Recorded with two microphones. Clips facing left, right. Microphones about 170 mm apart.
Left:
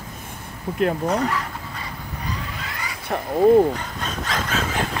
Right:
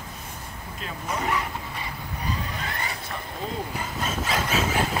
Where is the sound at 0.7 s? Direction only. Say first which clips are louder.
Left 12 dB; 65° left (ahead or behind).